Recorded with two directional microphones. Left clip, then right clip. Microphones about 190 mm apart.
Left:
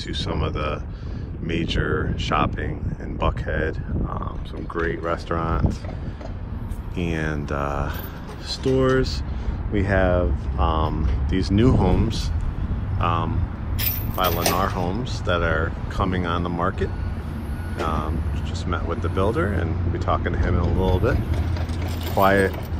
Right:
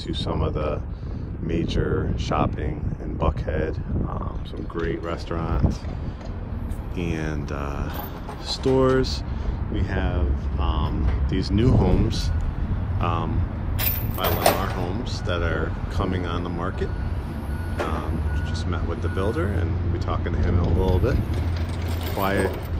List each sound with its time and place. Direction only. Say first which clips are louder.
0.1 s speech: right 1 dB; 5° right (ahead or behind)
4.8 s speech: left 4 dB; 5° left (ahead or behind)
7.0 s speech: left 3 dB; 5° left (ahead or behind)
9.8 s speech: left 10 dB; 15° left (ahead or behind)
11.2 s speech: left 3 dB; 10° left (ahead or behind)
14.2 s speech: right 1 dB; 30° right (ahead or behind)
14.9 s speech: left 4 dB; 5° left (ahead or behind)
18.7 s speech: left 5 dB; 5° left (ahead or behind)
22.2 s speech: left 6 dB; 5° left (ahead or behind)